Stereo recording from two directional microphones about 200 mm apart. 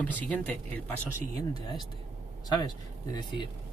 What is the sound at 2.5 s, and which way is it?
Speech, 20° left (ahead or behind).